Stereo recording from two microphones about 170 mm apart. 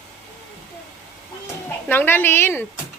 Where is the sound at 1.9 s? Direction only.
10° left (ahead or behind).